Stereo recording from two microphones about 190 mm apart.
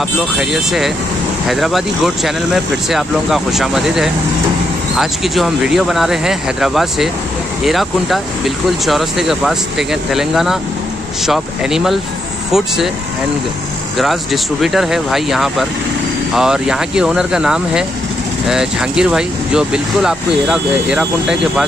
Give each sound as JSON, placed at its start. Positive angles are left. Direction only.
{"t": 0.4, "sound": "speech", "side_deg": 0}
{"t": 13.9, "sound": "speech", "side_deg": 0}